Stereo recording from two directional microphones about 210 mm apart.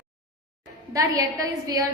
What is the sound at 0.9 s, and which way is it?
Speech, 15° right (ahead or behind).